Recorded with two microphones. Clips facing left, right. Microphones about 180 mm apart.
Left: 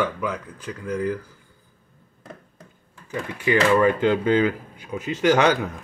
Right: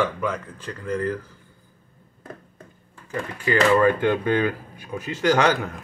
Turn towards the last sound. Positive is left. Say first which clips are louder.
# left 1 dB
turn(degrees=15)  # may be behind; listen again after turning